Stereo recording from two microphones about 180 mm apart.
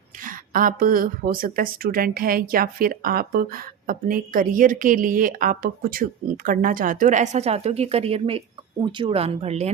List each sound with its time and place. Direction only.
0.3 s a woman's voice: 50° right (ahead or behind)